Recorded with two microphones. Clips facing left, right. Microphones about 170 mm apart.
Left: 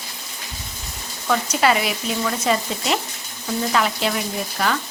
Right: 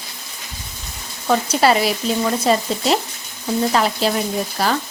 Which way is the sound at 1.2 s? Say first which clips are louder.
Right 3 dB; 35° right (ahead or behind).